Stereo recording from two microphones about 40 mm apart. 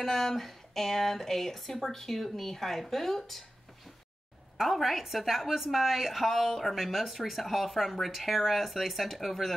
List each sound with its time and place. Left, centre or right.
0.0 s speech: centre
4.6 s a woman's voice: centre